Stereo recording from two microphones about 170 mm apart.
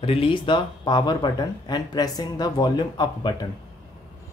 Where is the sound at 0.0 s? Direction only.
30° left (ahead or behind).